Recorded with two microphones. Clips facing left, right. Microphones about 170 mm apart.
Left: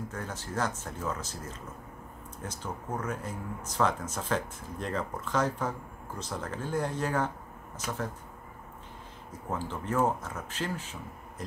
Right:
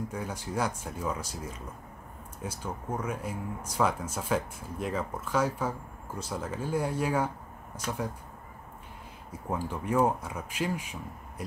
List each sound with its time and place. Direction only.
0.1 s speech: 10° right (ahead or behind)
9.3 s speech: 10° right (ahead or behind)